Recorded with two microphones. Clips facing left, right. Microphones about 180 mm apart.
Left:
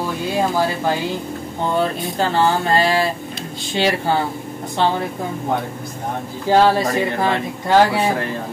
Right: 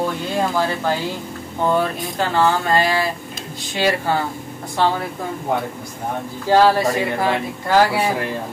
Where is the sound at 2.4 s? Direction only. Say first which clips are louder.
Even; 30° left (ahead or behind).